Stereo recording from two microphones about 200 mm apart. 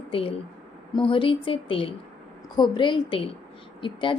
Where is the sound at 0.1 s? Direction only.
25° left (ahead or behind).